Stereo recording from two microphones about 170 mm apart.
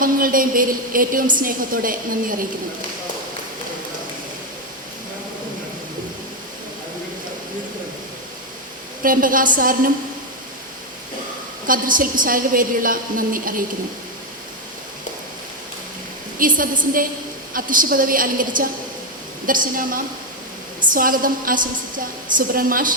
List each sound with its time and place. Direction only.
0.0 s a woman's voice: 55° right (ahead or behind)
9.0 s a woman's voice: 55° right (ahead or behind)
11.6 s a woman's voice: 55° right (ahead or behind)
16.4 s a sound: 55° right (ahead or behind)
17.5 s a woman's voice: 55° right (ahead or behind)